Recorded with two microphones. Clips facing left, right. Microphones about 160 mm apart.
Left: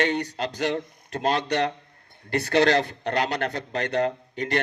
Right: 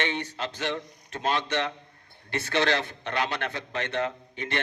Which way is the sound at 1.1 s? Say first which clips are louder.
Left 4 dB; 40° left (ahead or behind).